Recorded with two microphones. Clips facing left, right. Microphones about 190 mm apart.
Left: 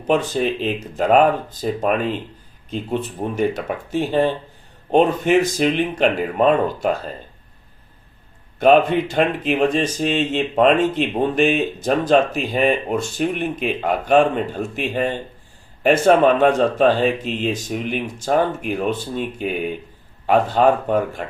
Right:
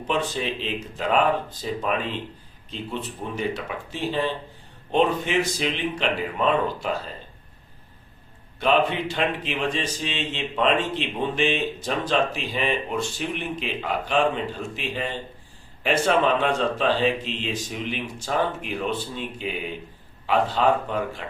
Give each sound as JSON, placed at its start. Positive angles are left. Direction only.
{"t": 0.1, "sound": "speech", "side_deg": 45}
{"t": 8.5, "sound": "speech", "side_deg": 45}